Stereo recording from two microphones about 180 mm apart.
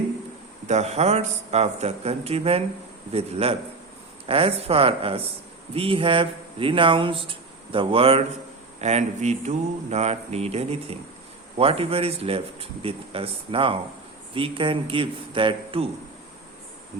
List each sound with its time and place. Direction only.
0.7 s speech: 40° right (ahead or behind)